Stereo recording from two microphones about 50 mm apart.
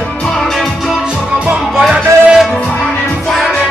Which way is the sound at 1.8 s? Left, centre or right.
Centre.